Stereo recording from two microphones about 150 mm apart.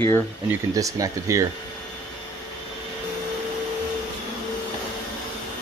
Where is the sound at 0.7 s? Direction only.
25° right (ahead or behind).